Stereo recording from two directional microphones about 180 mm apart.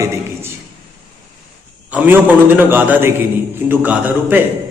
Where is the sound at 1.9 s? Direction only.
10° right (ahead or behind).